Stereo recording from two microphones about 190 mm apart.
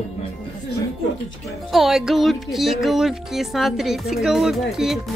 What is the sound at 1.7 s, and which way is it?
Speech, centre (ahead or behind).